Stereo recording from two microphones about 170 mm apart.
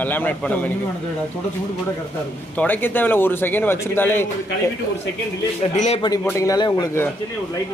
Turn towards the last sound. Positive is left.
turn(degrees=15)  # may be behind; listen again after turning